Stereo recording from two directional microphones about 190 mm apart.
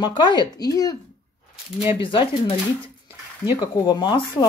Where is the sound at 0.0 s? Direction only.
25° left (ahead or behind).